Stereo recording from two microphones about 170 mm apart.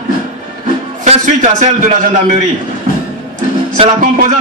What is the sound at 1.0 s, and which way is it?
Speech, 45° right (ahead or behind).